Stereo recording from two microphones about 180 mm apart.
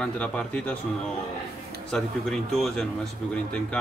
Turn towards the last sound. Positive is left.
turn(degrees=5)  # may be behind; listen again after turning